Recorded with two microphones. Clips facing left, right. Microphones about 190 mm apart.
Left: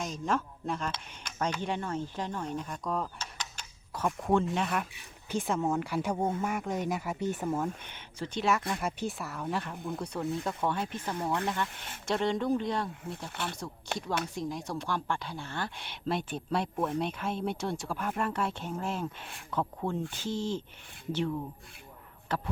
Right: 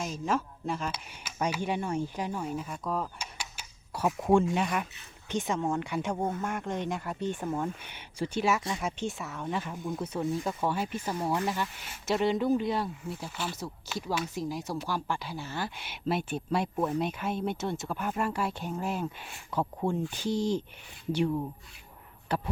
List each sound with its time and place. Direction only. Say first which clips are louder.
0.0 s speech: right 1 dB; 5° right (ahead or behind)
4.4 s speech: right 2 dB; centre (ahead or behind)
7.9 s speech: right 4 dB; 10° right (ahead or behind)
13.3 s speech: even; 60° left (ahead or behind)
13.9 s speech: even; 5° right (ahead or behind)